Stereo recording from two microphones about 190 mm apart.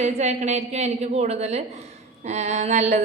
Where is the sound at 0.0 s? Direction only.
35° right (ahead or behind).